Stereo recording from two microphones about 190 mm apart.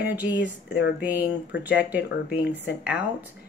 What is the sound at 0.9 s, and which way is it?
Speech, 10° right (ahead or behind).